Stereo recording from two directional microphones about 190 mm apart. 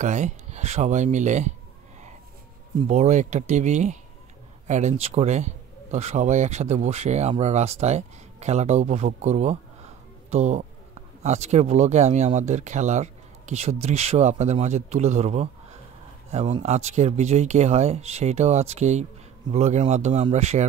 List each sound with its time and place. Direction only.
0.0 s speech: 40° right (ahead or behind)
2.9 s speech: 35° right (ahead or behind)